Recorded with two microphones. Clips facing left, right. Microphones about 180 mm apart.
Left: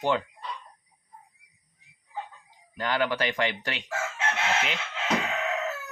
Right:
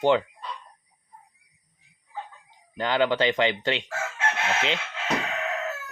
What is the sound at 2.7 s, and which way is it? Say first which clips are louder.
Speech: right 4 dB; 25° right (ahead or behind).